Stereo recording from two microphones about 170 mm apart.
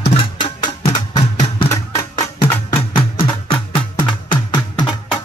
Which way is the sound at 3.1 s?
30° left (ahead or behind).